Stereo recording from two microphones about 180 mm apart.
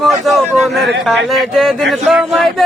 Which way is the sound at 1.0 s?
Centre (ahead or behind).